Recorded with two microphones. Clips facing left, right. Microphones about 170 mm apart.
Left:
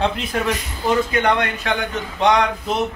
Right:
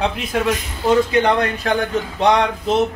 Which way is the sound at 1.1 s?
30° right (ahead or behind).